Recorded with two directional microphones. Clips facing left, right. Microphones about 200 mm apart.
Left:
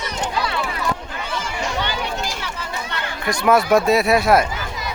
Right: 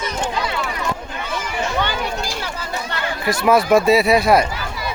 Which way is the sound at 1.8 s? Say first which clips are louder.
Right 4 dB; 50° right (ahead or behind).